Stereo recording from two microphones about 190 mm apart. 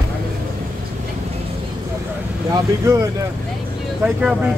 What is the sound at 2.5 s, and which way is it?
Speech, 15° right (ahead or behind).